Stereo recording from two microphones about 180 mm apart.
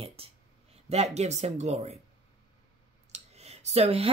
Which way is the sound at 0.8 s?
35° right (ahead or behind).